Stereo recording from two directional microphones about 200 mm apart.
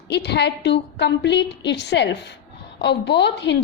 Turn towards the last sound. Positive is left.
turn(degrees=60)  # may be behind; listen again after turning